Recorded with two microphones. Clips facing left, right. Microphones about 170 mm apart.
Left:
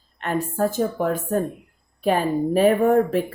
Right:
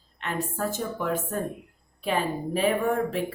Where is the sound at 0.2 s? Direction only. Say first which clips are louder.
Left 7 dB; 45° left (ahead or behind).